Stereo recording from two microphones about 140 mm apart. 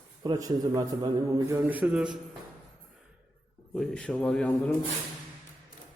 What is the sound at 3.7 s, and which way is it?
Speech, 5° left (ahead or behind).